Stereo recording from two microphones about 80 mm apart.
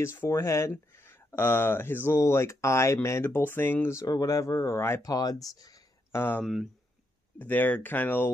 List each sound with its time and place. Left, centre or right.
0.0 s speech: left
4.0 s speech: left
5.0 s speech: left
6.1 s speech: left
6.4 s speech: centre
7.3 s speech: left